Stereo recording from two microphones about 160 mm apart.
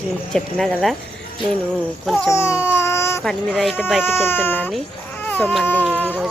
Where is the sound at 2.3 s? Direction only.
15° left (ahead or behind).